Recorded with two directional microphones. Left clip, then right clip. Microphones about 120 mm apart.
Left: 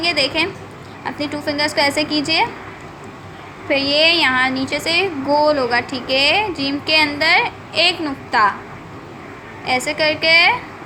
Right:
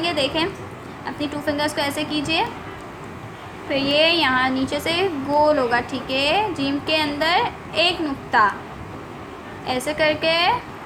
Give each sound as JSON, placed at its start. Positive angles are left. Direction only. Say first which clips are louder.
{"t": 0.0, "sound": "a woman's voice", "louder": "left 4 dB", "side_deg": 30}
{"t": 3.7, "sound": "speech", "louder": "left 3 dB", "side_deg": 30}
{"t": 9.6, "sound": "speech", "louder": "left 3 dB", "side_deg": 35}